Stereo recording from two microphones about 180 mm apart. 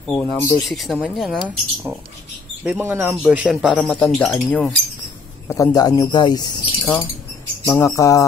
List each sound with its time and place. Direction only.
0.2 s speech: 15° left (ahead or behind)
0.7 s speech: centre (ahead or behind)
2.6 s speech: 10° right (ahead or behind)
5.5 s speech: 20° left (ahead or behind)